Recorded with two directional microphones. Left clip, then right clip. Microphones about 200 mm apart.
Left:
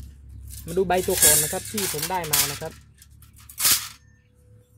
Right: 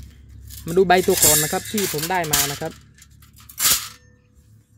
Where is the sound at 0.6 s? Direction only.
50° right (ahead or behind).